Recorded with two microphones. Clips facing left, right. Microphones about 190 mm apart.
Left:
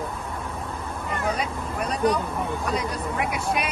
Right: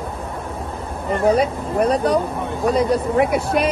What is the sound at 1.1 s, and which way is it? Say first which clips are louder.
Speech: right 11 dB; 30° right (ahead or behind).